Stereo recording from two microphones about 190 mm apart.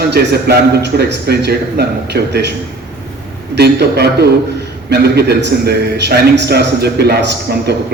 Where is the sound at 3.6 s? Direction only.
60° right (ahead or behind).